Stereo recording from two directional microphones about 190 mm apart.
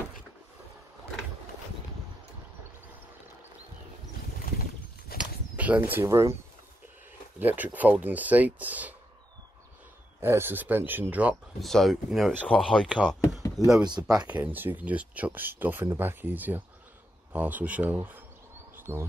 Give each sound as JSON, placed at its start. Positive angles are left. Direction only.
{"t": 4.5, "sound": "boat", "side_deg": 50}
{"t": 5.1, "sound": "bird flight", "side_deg": -10}
{"t": 7.3, "sound": "speech", "side_deg": -10}
{"t": 10.2, "sound": "speech", "side_deg": -10}
{"t": 13.8, "sound": "speech", "side_deg": -25}
{"t": 14.1, "sound": "speech", "side_deg": -5}
{"t": 18.8, "sound": "bird", "side_deg": -15}